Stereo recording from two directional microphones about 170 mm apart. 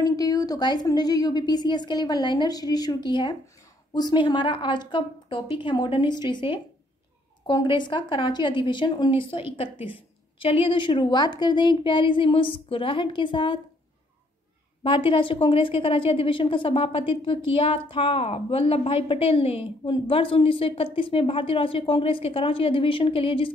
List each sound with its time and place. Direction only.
0.0 s a woman's voice: 20° left (ahead or behind)
14.8 s a woman's voice: 30° left (ahead or behind)